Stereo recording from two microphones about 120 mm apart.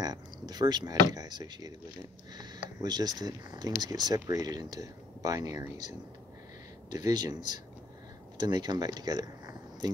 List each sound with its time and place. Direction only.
0.0 s speech: 35° right (ahead or behind)
2.8 s speech: 35° right (ahead or behind)